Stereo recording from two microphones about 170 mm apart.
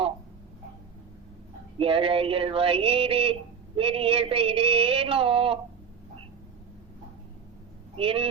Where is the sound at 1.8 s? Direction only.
35° right (ahead or behind).